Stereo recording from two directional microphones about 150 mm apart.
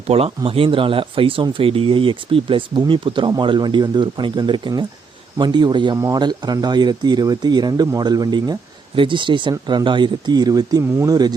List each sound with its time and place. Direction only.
0.1 s speech: 40° right (ahead or behind); by 11.3 s 25° right (ahead or behind)